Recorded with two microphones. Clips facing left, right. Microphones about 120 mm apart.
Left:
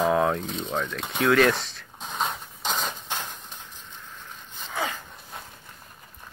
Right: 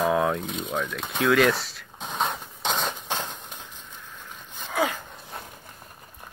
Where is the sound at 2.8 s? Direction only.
15° right (ahead or behind).